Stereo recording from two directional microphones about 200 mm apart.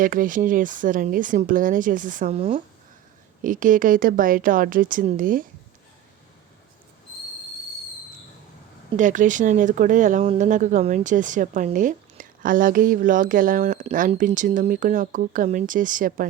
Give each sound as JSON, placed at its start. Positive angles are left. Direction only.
{"t": 0.0, "sound": "speech", "side_deg": -45}
{"t": 3.4, "sound": "speech", "side_deg": -40}
{"t": 9.0, "sound": "speech", "side_deg": -40}